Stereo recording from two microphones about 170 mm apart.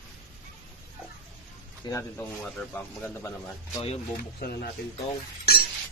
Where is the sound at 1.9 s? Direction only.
20° left (ahead or behind).